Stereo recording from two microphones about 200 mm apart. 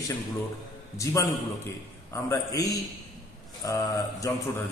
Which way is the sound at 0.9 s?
15° left (ahead or behind).